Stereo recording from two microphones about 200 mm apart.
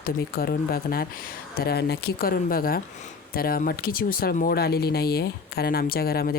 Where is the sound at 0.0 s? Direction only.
50° left (ahead or behind).